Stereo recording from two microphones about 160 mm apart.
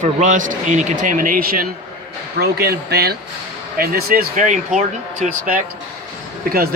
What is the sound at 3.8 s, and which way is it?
Speech, 70° right (ahead or behind).